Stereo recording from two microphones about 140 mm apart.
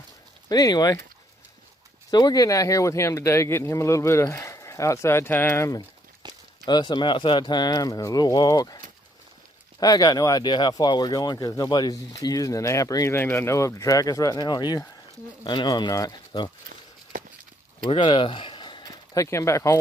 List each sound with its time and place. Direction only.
0.5 s speech: 30° left (ahead or behind)
2.0 s speech: 30° left (ahead or behind)
6.2 s a sound: 30° right (ahead or behind)
6.6 s speech: 30° left (ahead or behind)
17.8 s speech: 35° left (ahead or behind); by 19.8 s 20° left (ahead or behind)